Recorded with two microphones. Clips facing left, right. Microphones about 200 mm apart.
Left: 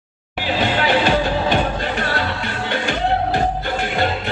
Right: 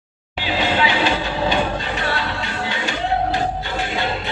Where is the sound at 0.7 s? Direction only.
50° left (ahead or behind).